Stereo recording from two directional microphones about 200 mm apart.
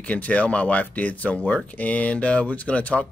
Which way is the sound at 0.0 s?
5° left (ahead or behind).